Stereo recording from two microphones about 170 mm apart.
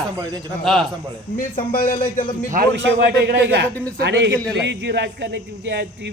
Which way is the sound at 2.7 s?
85° right.